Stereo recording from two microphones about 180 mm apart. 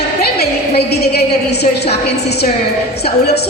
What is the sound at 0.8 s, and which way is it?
Speech, 65° left (ahead or behind).